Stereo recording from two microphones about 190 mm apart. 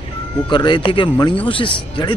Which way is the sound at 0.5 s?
25° left (ahead or behind).